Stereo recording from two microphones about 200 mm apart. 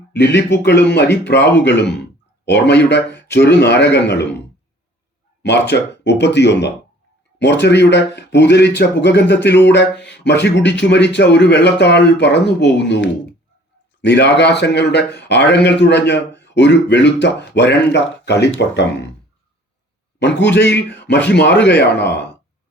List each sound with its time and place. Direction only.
0.1 s speech: 60° left (ahead or behind)
5.4 s speech: 55° left (ahead or behind)
20.1 s speech: 60° left (ahead or behind)